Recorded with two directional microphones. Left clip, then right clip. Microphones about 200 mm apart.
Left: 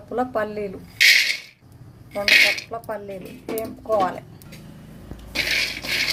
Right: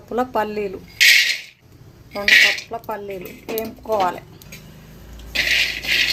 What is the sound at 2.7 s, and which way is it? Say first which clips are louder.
Speech: right 2 dB; 20° right (ahead or behind).